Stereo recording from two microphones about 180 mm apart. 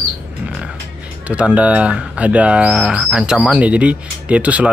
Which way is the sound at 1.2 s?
5° right (ahead or behind).